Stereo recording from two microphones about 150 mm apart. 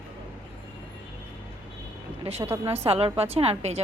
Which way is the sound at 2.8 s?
40° right (ahead or behind).